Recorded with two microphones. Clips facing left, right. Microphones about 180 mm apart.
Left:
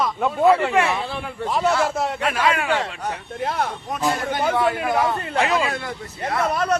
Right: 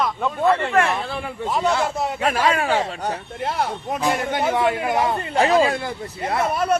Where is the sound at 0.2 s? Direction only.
10° left (ahead or behind).